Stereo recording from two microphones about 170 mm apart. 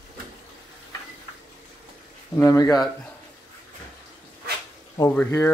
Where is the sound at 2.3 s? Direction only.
20° left (ahead or behind).